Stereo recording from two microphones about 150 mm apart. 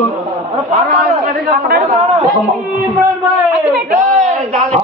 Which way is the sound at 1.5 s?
60° right (ahead or behind).